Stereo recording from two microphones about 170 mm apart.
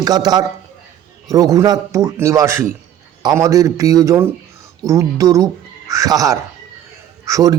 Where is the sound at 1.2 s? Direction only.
20° right (ahead or behind).